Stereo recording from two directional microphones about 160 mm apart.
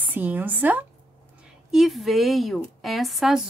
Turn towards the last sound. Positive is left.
turn(degrees=0)  # may be behind; listen again after turning